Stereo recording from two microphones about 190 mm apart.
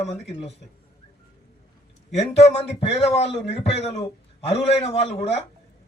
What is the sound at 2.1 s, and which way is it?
A man's voice, 35° left (ahead or behind).